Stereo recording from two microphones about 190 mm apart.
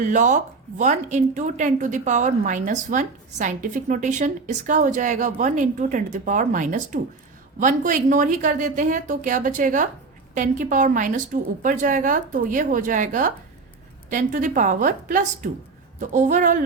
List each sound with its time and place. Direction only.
0.0 s a woman's voice: 40° right (ahead or behind)